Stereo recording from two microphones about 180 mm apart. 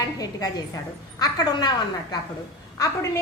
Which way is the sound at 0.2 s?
20° left (ahead or behind).